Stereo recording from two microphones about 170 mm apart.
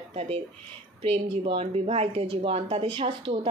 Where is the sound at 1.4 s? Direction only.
35° right (ahead or behind).